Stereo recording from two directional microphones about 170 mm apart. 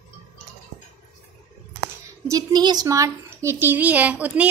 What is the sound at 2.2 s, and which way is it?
Speech, 20° right (ahead or behind).